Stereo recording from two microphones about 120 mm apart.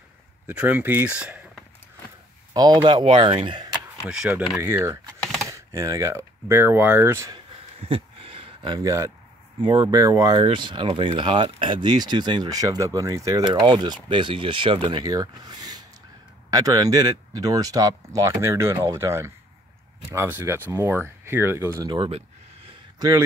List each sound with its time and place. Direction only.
0.5 s speech: 15° right (ahead or behind)
2.5 s speech: 35° right (ahead or behind)
4.0 s speech: 5° right (ahead or behind)
4.6 s speech: 20° right (ahead or behind)
5.2 s typing: 5° left (ahead or behind)
5.5 s speech: 25° right (ahead or behind)
7.9 s a sound: 50° right (ahead or behind)
8.8 s speech: 25° right (ahead or behind)
9.6 s speech: 40° right (ahead or behind); by 21.8 s 20° right (ahead or behind)
21.8 s speech: 45° right (ahead or behind)
22.9 s speech: 30° right (ahead or behind)